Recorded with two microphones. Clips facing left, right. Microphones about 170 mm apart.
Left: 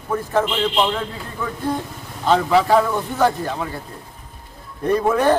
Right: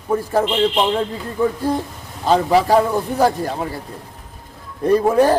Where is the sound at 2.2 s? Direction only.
35° right (ahead or behind).